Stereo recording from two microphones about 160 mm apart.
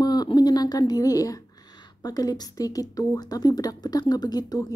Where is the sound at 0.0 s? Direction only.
25° left (ahead or behind).